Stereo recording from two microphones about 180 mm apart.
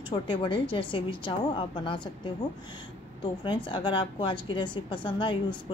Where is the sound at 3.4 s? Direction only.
25° left (ahead or behind).